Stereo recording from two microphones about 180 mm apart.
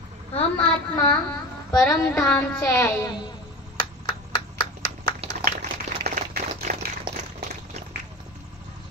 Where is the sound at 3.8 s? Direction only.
20° left (ahead or behind).